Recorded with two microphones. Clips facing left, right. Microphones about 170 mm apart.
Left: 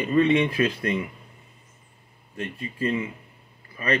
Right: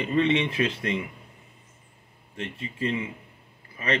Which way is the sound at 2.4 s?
20° right (ahead or behind).